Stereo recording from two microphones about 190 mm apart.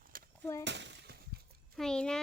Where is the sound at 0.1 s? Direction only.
50° right (ahead or behind).